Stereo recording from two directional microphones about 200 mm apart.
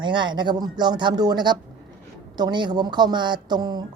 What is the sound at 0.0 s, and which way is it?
Speech, 25° right (ahead or behind).